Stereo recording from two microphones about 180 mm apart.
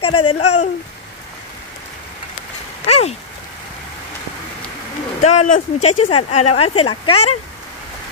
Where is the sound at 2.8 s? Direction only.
35° left (ahead or behind).